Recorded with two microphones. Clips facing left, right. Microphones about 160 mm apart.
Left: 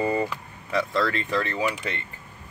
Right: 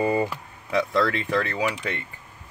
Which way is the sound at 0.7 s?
15° right (ahead or behind).